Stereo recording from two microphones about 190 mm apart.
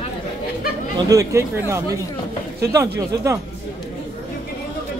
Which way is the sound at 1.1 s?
15° right (ahead or behind).